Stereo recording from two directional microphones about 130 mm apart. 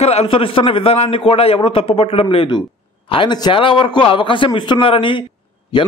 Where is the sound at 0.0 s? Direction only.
55° left (ahead or behind).